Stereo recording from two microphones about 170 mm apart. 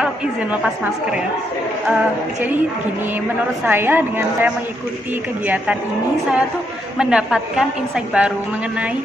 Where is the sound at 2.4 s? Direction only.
10° right (ahead or behind).